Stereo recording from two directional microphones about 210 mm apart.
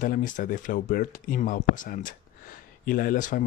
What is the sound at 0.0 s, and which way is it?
Speech, 40° left (ahead or behind).